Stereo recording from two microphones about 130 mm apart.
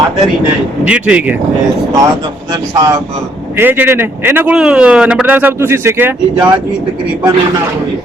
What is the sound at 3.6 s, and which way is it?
Speech, 15° right (ahead or behind).